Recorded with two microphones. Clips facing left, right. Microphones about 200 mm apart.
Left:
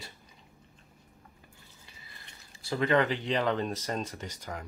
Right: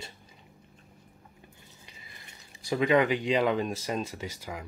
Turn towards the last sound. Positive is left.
turn(degrees=-10)  # may be behind; listen again after turning